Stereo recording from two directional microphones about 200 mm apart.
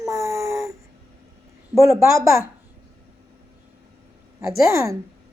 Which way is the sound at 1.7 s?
15° right (ahead or behind).